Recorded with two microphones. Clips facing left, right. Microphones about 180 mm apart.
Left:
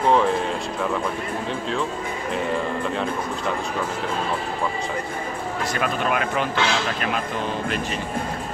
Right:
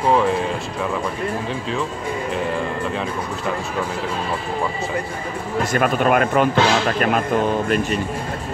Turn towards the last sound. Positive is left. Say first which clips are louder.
# right 6 dB
turn(degrees=-50)  # may be behind; listen again after turning